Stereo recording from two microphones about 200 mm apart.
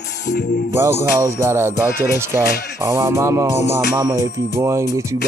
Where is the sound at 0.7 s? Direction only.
15° right (ahead or behind).